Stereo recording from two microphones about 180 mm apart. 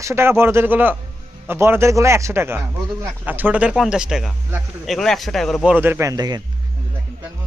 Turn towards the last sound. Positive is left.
turn(degrees=-20)  # may be behind; listen again after turning